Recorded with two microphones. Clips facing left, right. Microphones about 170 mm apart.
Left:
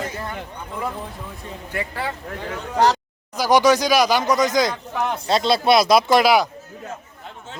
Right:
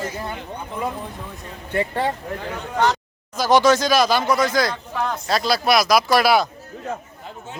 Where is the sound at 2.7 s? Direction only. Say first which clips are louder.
Left 2 dB; 35° left (ahead or behind).